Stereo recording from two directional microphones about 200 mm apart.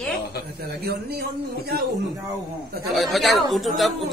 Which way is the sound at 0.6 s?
50° right (ahead or behind).